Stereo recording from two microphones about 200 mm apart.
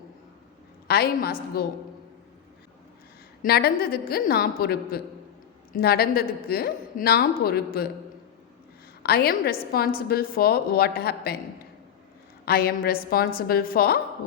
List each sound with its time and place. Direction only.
0.9 s a woman's voice: 50° left (ahead or behind)
3.4 s a woman's voice: 50° left (ahead or behind)
9.0 s a woman's voice: 50° left (ahead or behind)
12.5 s a woman's voice: 50° left (ahead or behind)